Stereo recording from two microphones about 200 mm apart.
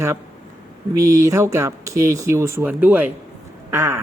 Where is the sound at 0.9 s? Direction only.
15° right (ahead or behind).